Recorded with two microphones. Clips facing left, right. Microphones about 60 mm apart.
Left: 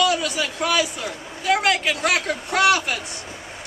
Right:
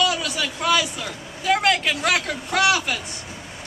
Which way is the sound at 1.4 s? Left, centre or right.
Centre.